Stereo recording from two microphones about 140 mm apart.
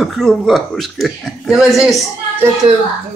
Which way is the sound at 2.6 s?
40° right (ahead or behind).